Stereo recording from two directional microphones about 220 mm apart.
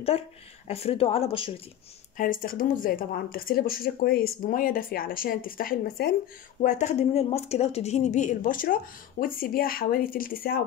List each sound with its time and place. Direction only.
0.1 s speech: 25° left (ahead or behind)
2.1 s speech: 40° left (ahead or behind)
6.6 s speech: 35° left (ahead or behind)